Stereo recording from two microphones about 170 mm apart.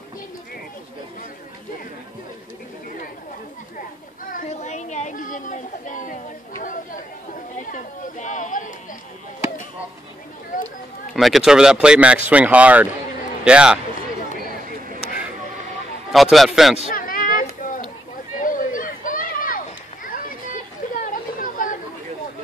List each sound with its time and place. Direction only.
4.3 s a sound: 50° left (ahead or behind)
7.7 s speech: 45° left (ahead or behind)
11.1 s a man's voice: centre (ahead or behind)
16.1 s speech: centre (ahead or behind)
16.8 s a sound: 55° left (ahead or behind)
21.0 s chatter: 55° left (ahead or behind)